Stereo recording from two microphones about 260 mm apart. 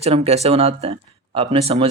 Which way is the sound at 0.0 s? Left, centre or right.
Right.